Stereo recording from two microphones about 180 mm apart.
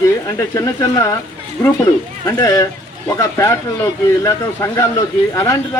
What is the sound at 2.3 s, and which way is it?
Speech, 15° left (ahead or behind).